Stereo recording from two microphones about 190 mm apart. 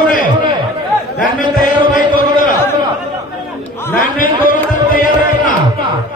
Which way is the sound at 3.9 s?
45° left (ahead or behind).